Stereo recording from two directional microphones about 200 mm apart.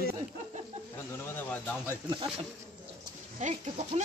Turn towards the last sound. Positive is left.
turn(degrees=-35)  # may be behind; listen again after turning